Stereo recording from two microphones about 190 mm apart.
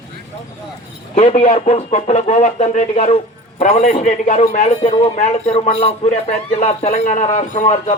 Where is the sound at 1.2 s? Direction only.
35° left (ahead or behind).